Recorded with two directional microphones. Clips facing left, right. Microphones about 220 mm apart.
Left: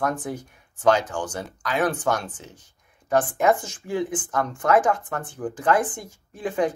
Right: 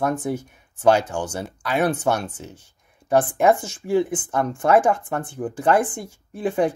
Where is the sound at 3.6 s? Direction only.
10° right (ahead or behind).